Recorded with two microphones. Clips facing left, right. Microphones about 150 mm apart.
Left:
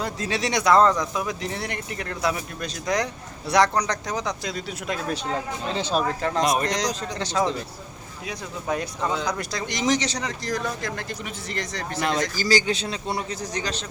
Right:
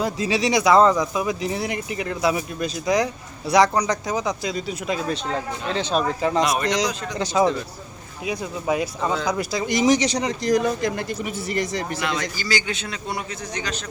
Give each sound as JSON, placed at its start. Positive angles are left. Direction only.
{"t": 0.0, "sound": "speech", "side_deg": -5}
{"t": 12.0, "sound": "a man's voice", "side_deg": 40}